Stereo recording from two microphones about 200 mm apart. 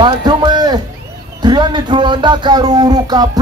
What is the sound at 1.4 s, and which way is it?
Speech, 20° right (ahead or behind).